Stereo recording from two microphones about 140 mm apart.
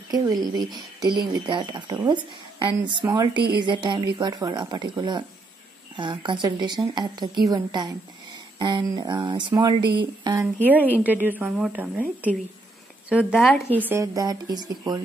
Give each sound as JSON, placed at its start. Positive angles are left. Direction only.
{"t": 0.1, "sound": "a woman's voice", "side_deg": -30}
{"t": 10.4, "sound": "a woman's voice", "side_deg": -10}
{"t": 14.0, "sound": "speech", "side_deg": -25}